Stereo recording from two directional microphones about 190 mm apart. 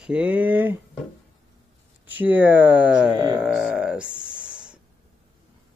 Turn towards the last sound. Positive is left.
turn(degrees=-5)  # may be behind; listen again after turning